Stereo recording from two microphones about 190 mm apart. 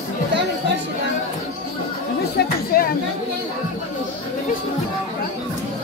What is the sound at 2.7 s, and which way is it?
Speech, 50° left (ahead or behind).